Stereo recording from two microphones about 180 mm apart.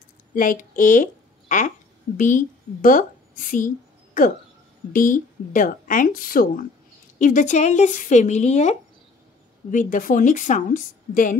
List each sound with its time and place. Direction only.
0.3 s a woman's voice: 50° left (ahead or behind)